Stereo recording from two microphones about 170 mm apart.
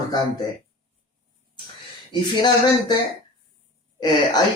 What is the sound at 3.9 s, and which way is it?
Speech, 25° left (ahead or behind).